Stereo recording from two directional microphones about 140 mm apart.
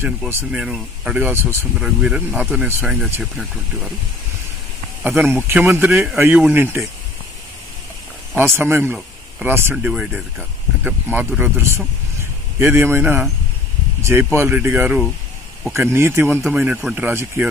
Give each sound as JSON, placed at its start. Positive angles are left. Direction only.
{"t": 0.5, "sound": "speech", "side_deg": -5}
{"t": 1.8, "sound": "speech", "side_deg": -5}
{"t": 5.0, "sound": "speech", "side_deg": -15}
{"t": 8.4, "sound": "speech", "side_deg": -15}